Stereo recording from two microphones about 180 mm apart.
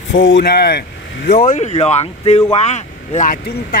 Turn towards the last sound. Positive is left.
turn(degrees=50)  # may be behind; listen again after turning